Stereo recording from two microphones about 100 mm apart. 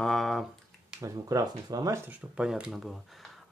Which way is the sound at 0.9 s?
35° right (ahead or behind).